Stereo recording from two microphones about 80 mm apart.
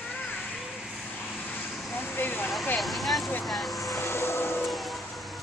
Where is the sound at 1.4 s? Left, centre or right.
Left.